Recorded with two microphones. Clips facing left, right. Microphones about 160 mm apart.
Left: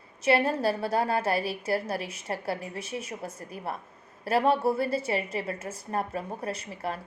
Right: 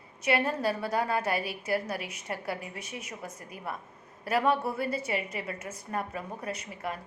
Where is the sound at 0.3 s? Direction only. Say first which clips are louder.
Left 3 dB; 30° left (ahead or behind).